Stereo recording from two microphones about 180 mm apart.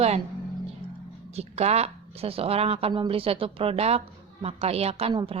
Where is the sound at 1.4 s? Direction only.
35° right (ahead or behind).